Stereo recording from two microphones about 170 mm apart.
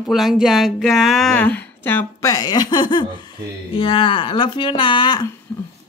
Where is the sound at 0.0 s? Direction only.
Centre (ahead or behind); by 5.3 s 25° left (ahead or behind).